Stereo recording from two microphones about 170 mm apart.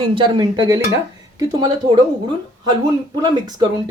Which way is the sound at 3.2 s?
25° right (ahead or behind).